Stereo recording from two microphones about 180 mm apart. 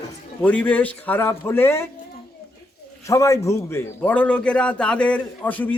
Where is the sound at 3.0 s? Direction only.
15° left (ahead or behind).